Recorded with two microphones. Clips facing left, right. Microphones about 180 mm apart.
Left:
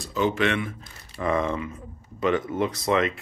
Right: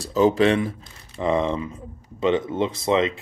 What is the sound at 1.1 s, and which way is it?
Speech, 25° right (ahead or behind).